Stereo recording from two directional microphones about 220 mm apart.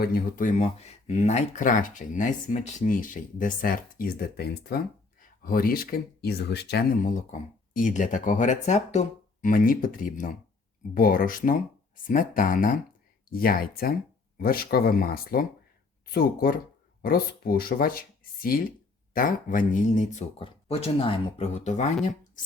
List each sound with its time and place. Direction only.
0.0 s speech: 40° left (ahead or behind)